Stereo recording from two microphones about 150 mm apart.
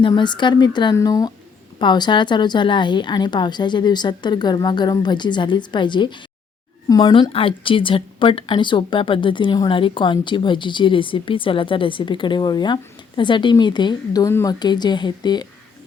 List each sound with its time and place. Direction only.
0.0 s a woman's voice: 30° left (ahead or behind)